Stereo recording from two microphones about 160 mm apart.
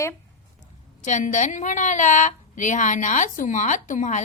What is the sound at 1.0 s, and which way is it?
A woman's voice, 50° left (ahead or behind).